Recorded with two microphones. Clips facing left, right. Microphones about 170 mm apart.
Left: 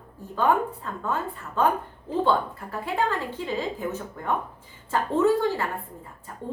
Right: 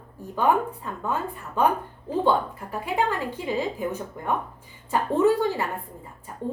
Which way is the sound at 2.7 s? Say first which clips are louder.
Right 1 dB; 15° right (ahead or behind).